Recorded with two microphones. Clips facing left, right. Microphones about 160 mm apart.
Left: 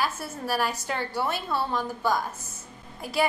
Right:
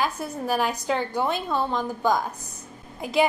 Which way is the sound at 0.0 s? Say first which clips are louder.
Right 3 dB; 20° right (ahead or behind).